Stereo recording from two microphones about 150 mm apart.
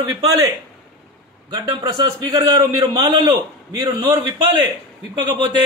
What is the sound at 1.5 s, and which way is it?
A man's voice, 30° right (ahead or behind).